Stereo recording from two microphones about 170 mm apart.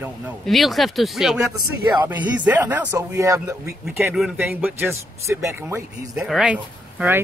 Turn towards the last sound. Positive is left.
turn(degrees=-10)  # may be behind; listen again after turning